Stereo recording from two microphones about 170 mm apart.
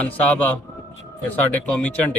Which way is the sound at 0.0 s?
10° left (ahead or behind).